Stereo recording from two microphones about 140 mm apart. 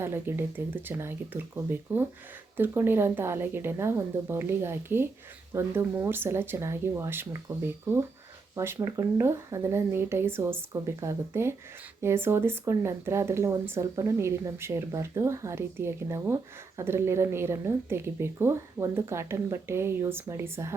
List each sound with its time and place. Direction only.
0.0 s a woman's voice: 15° right (ahead or behind)